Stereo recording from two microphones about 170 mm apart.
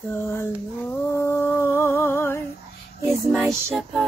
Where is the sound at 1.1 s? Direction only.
15° left (ahead or behind).